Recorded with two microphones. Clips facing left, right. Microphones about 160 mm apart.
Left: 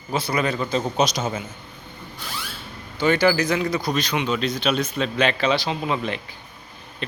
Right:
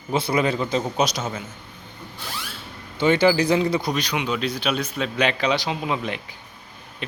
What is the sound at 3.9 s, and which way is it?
A man's voice, 10° right (ahead or behind).